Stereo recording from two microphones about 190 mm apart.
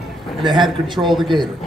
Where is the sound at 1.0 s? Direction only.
Centre (ahead or behind).